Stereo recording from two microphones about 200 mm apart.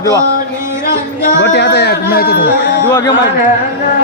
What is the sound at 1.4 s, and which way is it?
Speech, 60° left (ahead or behind).